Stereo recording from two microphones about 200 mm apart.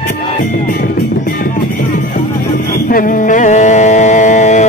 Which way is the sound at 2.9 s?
40° left (ahead or behind).